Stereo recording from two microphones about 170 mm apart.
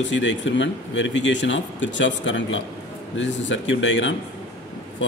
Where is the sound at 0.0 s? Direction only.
90° left.